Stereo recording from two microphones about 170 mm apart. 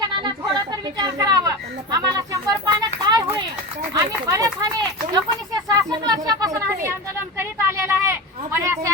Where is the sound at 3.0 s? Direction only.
25° right (ahead or behind).